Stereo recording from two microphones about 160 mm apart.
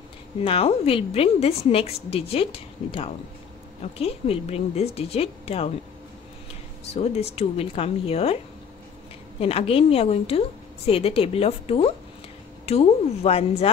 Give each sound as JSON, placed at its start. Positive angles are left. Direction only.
{"t": 0.4, "sound": "a woman's voice", "side_deg": 35}
{"t": 6.9, "sound": "a woman's voice", "side_deg": 40}
{"t": 9.4, "sound": "a woman's voice", "side_deg": 35}